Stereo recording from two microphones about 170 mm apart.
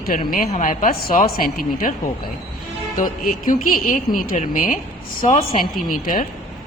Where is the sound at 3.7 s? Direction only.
55° left (ahead or behind).